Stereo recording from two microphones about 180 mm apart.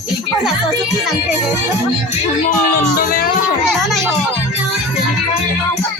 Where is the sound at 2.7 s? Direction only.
50° left (ahead or behind).